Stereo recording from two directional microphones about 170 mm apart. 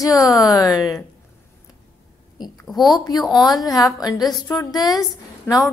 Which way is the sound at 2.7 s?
Centre (ahead or behind).